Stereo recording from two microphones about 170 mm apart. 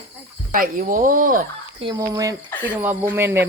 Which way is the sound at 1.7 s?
30° right (ahead or behind).